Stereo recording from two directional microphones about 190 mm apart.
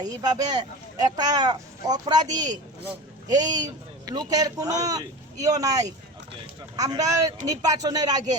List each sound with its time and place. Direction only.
0.2 s speech: 20° right (ahead or behind)